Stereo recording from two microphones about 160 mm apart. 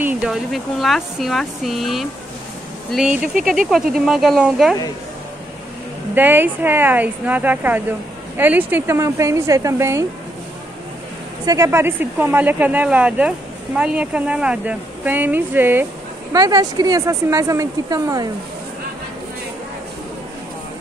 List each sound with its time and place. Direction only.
0.0 s speech: 5° right (ahead or behind)
6.1 s speech: 10° right (ahead or behind)
11.4 s speech: 20° right (ahead or behind)
16.3 s speech: 25° right (ahead or behind)